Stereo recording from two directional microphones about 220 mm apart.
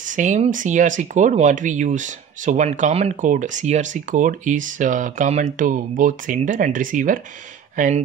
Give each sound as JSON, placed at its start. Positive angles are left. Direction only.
{"t": 0.0, "sound": "speech", "side_deg": -35}